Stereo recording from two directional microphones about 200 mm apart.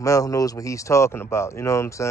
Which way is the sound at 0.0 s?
15° left (ahead or behind).